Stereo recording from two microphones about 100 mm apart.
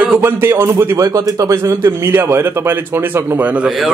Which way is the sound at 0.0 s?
15° right (ahead or behind).